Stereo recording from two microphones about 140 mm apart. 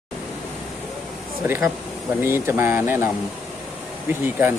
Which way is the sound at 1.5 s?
15° right (ahead or behind).